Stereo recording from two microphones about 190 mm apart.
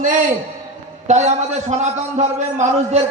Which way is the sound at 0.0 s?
40° right (ahead or behind).